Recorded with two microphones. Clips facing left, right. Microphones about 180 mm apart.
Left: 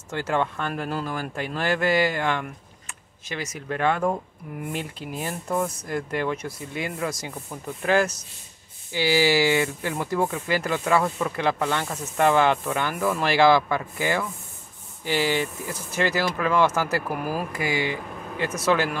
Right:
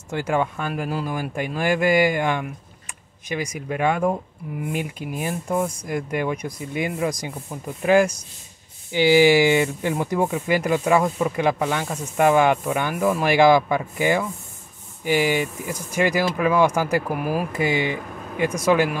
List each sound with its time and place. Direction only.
0.1 s speech: 10° right (ahead or behind)